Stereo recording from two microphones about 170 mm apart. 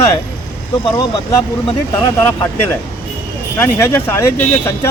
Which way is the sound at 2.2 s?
10° left (ahead or behind).